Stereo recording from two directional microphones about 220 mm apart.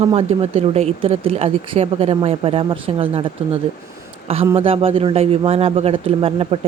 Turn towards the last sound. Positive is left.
turn(degrees=-25)  # may be behind; listen again after turning